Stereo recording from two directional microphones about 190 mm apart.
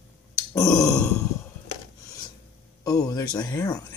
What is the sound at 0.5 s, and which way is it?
Grunt, 20° left (ahead or behind).